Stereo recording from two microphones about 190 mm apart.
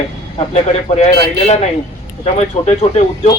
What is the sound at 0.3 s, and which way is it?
A man's voice, 35° left (ahead or behind).